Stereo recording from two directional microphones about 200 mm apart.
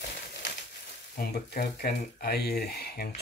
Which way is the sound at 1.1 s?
50° left (ahead or behind).